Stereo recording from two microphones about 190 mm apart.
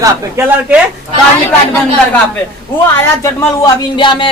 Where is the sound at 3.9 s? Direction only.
25° left (ahead or behind).